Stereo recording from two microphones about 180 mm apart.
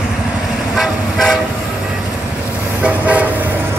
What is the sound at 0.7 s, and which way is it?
Vehicle, centre (ahead or behind).